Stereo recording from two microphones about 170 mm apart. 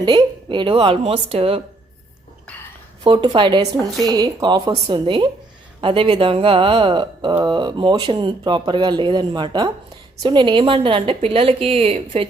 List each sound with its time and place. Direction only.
0.0 s speech: 25° right (ahead or behind)
3.0 s speech: 25° right (ahead or behind)